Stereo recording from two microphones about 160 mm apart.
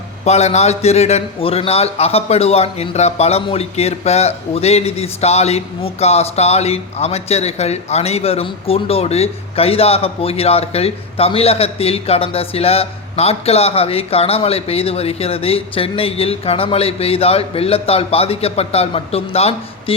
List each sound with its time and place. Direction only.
0.3 s a man's voice: 45° left (ahead or behind)